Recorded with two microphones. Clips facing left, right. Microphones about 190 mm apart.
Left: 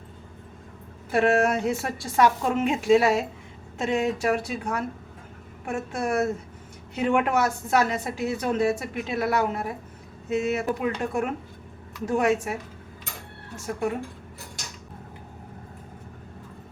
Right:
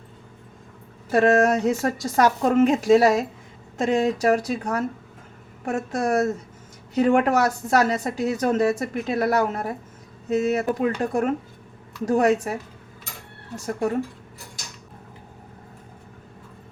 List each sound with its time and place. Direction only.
1.1 s a woman's voice: 40° right (ahead or behind)